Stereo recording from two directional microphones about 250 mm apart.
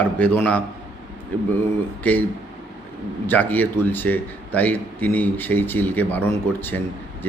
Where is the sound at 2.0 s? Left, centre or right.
Centre.